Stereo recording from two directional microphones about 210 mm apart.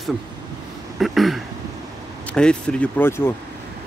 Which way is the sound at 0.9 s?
Centre (ahead or behind).